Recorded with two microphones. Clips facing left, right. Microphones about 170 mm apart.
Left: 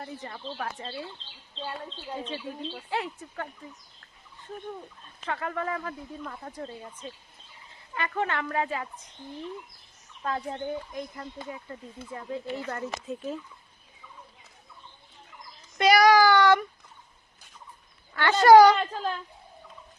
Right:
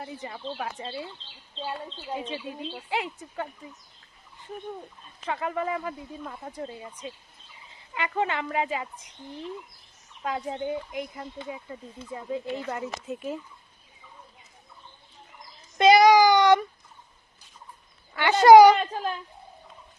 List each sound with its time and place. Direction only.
0.0 s speech: 10° right (ahead or behind)
2.0 s speech: 15° right (ahead or behind)
5.2 s speech: 15° right (ahead or behind)
10.2 s speech: 15° right (ahead or behind)
15.8 s child singing: 20° right (ahead or behind)
18.1 s speech: 15° right (ahead or behind)